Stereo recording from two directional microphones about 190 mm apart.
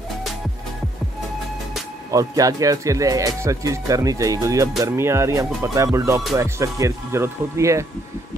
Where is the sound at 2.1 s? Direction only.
15° right (ahead or behind).